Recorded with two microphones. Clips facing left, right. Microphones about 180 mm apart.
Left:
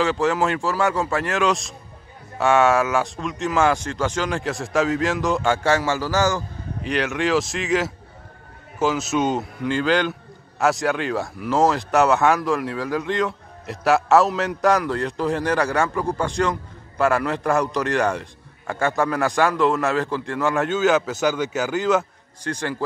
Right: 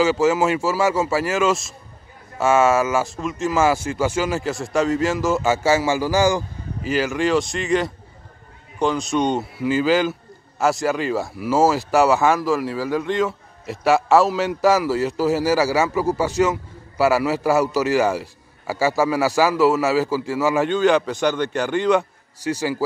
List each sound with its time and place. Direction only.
0.0 s a man's voice: 5° right (ahead or behind)